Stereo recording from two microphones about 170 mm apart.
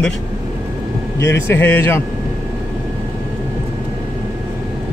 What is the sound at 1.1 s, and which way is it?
Speech, 15° left (ahead or behind).